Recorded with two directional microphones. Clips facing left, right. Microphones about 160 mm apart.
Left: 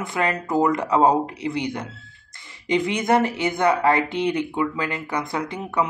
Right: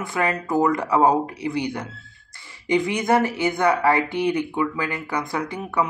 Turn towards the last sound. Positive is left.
turn(degrees=20)  # may be behind; listen again after turning